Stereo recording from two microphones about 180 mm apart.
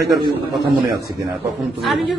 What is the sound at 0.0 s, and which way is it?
Speech, 20° right (ahead or behind).